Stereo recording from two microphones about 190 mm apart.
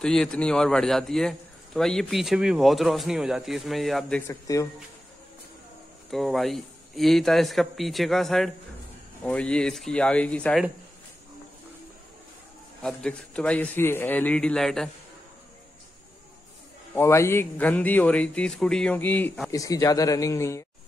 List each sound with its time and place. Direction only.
0.0 s a man's voice: 5° left (ahead or behind)
4.3 s speech: 15° left (ahead or behind)
6.0 s a man's voice: centre (ahead or behind)
12.8 s a man's voice: 5° left (ahead or behind)
16.9 s speech: 15° left (ahead or behind)
19.5 s speech: 15° left (ahead or behind)